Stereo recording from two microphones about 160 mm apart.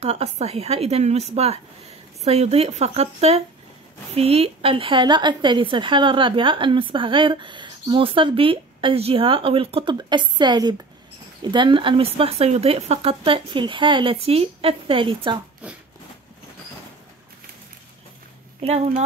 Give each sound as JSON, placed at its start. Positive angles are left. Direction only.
{"t": 0.0, "sound": "a woman's voice", "side_deg": -40}
{"t": 18.6, "sound": "a woman's voice", "side_deg": -40}